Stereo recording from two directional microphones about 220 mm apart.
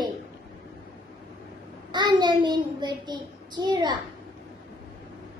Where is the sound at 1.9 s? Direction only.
20° right (ahead or behind).